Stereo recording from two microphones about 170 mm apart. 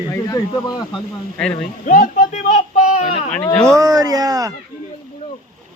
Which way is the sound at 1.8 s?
50° left (ahead or behind).